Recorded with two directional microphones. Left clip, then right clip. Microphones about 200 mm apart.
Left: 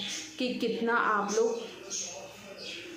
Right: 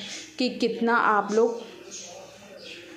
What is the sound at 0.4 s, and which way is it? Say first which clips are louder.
Speech: right 6 dB; 35° right (ahead or behind).